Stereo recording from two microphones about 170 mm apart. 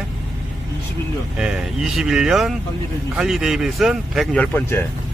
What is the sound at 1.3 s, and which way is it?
Speech, 5° right (ahead or behind).